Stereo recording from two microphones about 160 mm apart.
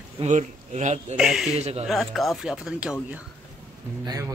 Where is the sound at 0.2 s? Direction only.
45° right (ahead or behind).